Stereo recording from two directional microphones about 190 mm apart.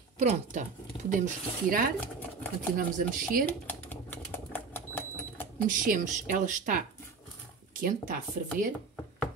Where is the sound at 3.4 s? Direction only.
10° left (ahead or behind).